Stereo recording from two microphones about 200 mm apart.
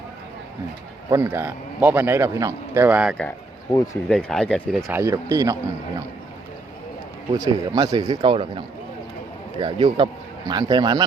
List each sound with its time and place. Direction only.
1.1 s a man's voice: 10° right (ahead or behind)
3.2 s speech: 5° left (ahead or behind)
4.9 s a man's voice: 15° right (ahead or behind)
7.3 s speech: 15° right (ahead or behind)
9.6 s speech: 25° right (ahead or behind)